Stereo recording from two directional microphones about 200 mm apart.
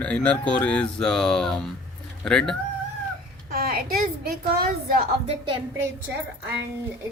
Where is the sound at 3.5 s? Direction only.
45° right (ahead or behind).